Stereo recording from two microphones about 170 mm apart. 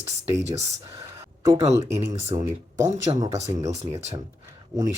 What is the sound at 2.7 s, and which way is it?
Speech, 15° right (ahead or behind).